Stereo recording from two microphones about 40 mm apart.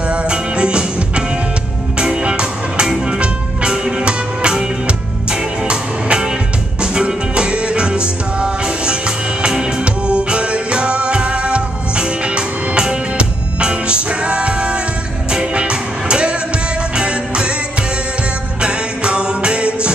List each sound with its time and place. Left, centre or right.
0.1 s music: right
18.6 s music: right